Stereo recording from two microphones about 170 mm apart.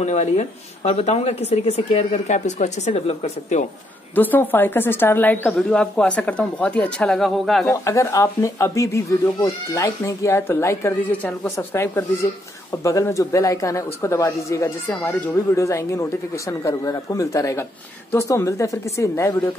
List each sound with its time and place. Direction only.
0.0 s speech: 45° left (ahead or behind)
4.1 s speech: 10° left (ahead or behind)
7.6 s speech: 15° left (ahead or behind)